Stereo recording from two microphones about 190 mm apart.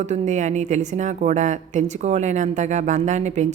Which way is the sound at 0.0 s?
35° right (ahead or behind).